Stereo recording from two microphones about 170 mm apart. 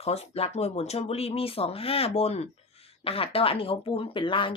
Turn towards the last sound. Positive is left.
turn(degrees=30)  # may be behind; listen again after turning